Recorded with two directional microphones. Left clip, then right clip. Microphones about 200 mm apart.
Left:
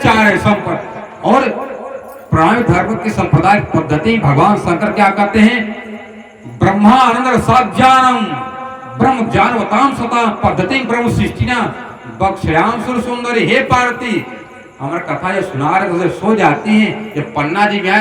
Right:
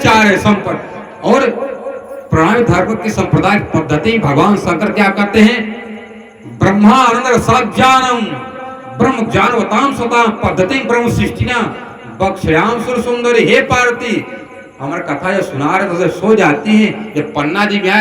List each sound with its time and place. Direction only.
0.0 s a sound: 25° right (ahead or behind)
2.6 s a man's voice: 20° right (ahead or behind)
6.6 s a man's voice: 25° right (ahead or behind)